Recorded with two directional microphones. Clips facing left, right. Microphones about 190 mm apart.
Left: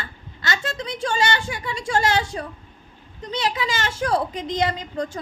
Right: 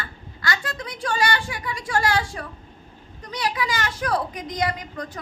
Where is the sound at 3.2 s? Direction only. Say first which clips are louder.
Left 2 dB; 25° left (ahead or behind).